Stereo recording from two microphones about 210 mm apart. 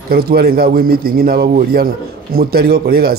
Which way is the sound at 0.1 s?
45° right (ahead or behind).